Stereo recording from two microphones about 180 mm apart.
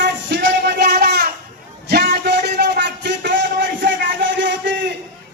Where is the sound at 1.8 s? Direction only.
65° right (ahead or behind).